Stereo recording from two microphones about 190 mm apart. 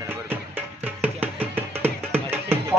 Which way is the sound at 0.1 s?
10° right (ahead or behind).